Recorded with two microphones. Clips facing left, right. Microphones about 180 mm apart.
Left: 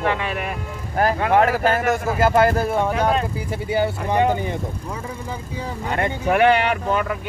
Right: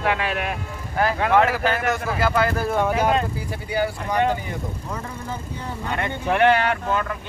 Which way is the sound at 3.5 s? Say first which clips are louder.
Left 4 dB; 25° left (ahead or behind).